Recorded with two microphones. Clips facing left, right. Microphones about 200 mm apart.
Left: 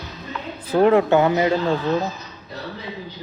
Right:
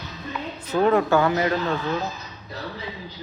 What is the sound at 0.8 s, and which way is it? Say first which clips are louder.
Speech: left 4 dB; 25° left (ahead or behind).